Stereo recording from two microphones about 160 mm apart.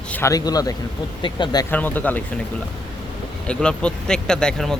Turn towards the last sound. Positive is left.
turn(degrees=5)  # may be behind; listen again after turning